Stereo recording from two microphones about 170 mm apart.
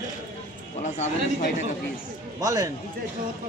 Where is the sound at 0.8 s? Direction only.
45° left (ahead or behind).